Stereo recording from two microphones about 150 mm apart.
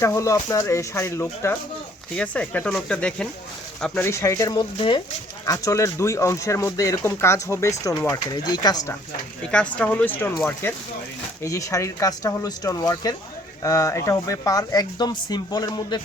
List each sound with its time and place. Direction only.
0.0 s speech: 20° left (ahead or behind); by 4.0 s 5° left (ahead or behind)
4.0 s speech: 20° left (ahead or behind)
5.5 s speech: 20° left (ahead or behind)
9.5 s speech: 5° left (ahead or behind); by 16.0 s 25° left (ahead or behind)